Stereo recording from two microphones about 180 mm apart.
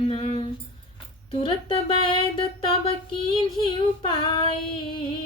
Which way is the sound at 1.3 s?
30° left (ahead or behind).